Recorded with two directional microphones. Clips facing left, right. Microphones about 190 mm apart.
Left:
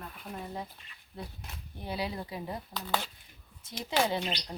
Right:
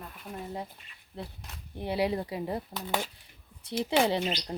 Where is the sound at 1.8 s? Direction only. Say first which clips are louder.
Right 7 dB; 25° right (ahead or behind).